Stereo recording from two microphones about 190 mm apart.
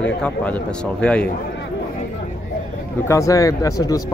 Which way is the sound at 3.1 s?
15° left (ahead or behind).